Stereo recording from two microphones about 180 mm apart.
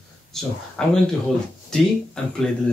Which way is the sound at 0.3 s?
Centre (ahead or behind).